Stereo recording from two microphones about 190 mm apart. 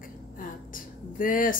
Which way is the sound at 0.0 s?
45° left (ahead or behind).